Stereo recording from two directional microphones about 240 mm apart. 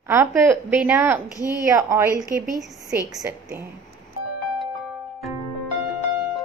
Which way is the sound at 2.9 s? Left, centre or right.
Centre.